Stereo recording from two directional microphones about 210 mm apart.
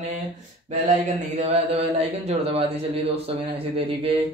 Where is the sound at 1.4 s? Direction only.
30° right (ahead or behind).